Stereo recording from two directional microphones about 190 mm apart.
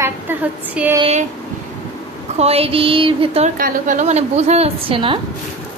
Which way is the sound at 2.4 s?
30° right (ahead or behind).